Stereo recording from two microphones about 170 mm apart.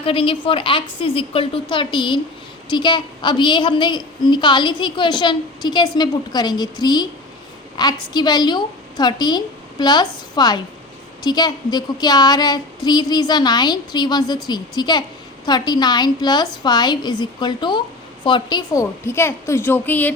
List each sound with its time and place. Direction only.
0.0 s a woman's voice: 30° left (ahead or behind); by 20.1 s 10° left (ahead or behind)